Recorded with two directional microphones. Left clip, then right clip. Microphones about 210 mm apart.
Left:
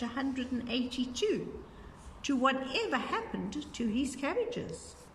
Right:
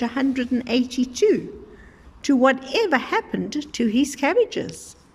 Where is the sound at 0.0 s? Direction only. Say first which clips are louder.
Right 12 dB; 45° right (ahead or behind).